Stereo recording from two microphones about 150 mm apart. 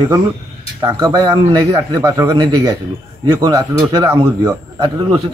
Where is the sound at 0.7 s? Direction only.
20° right (ahead or behind).